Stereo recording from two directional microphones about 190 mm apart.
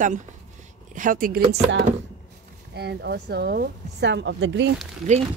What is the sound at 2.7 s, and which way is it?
Speech, 60° right (ahead or behind).